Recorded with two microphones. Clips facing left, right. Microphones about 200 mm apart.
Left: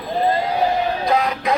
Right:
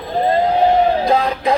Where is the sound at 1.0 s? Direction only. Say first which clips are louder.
Right 3 dB; 30° right (ahead or behind).